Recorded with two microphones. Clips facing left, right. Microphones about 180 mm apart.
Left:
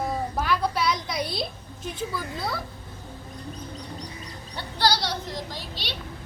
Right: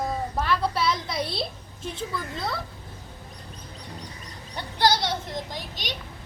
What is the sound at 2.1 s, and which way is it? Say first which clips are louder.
Speech: even; centre (ahead or behind).